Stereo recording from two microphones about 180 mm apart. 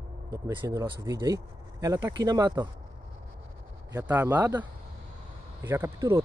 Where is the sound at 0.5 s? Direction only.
25° right (ahead or behind).